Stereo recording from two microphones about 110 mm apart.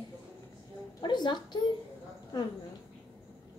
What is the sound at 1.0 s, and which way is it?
Speech, 40° left (ahead or behind).